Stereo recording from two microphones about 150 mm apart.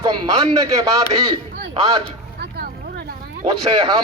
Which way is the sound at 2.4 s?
90° right.